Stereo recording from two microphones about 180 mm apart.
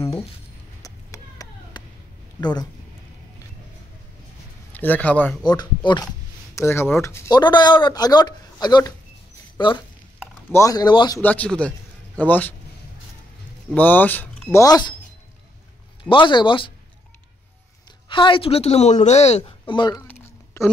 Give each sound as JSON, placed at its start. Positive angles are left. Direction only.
{"t": 0.8, "sound": "a sound", "side_deg": 20}
{"t": 2.4, "sound": "speech", "side_deg": 25}
{"t": 4.7, "sound": "speech", "side_deg": 10}
{"t": 5.4, "sound": "speech", "side_deg": 25}
{"t": 6.5, "sound": "speech", "side_deg": 15}
{"t": 11.2, "sound": "speech", "side_deg": 5}
{"t": 13.7, "sound": "speech", "side_deg": 10}
{"t": 16.1, "sound": "speech", "side_deg": 25}
{"t": 18.0, "sound": "speech", "side_deg": 25}
{"t": 20.1, "sound": "a sound", "side_deg": 10}